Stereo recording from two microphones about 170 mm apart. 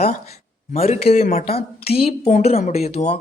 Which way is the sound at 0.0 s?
40° left (ahead or behind).